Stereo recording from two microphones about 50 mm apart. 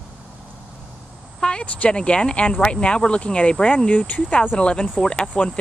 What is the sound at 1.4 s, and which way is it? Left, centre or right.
Speech, left.